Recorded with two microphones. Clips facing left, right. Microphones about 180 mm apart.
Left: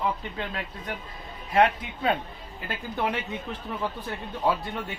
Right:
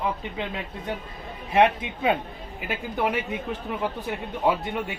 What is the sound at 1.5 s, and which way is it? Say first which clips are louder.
Speech: right 2 dB; 20° right (ahead or behind).